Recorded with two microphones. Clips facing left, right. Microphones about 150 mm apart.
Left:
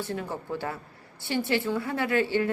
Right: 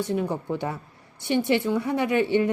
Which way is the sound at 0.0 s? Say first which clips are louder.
Right 6 dB; 20° right (ahead or behind).